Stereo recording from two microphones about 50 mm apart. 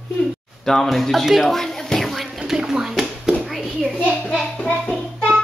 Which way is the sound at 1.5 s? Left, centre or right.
Centre.